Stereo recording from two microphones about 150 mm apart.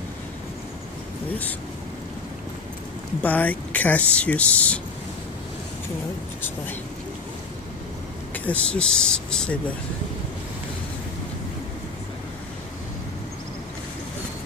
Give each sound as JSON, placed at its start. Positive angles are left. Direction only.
{"t": 3.2, "sound": "speech", "side_deg": 10}
{"t": 8.5, "sound": "speech", "side_deg": 5}